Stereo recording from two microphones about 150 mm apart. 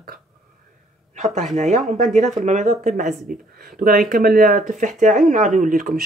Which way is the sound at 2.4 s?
50° right (ahead or behind).